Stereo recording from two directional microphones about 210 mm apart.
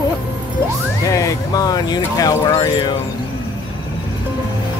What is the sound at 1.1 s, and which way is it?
Speech, 15° left (ahead or behind).